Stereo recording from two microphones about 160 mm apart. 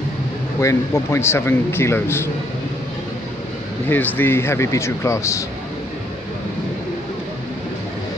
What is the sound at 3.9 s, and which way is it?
A man's voice, 10° left (ahead or behind).